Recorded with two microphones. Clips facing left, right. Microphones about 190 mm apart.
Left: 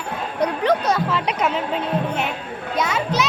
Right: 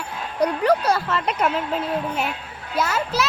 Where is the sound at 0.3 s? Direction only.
10° right (ahead or behind).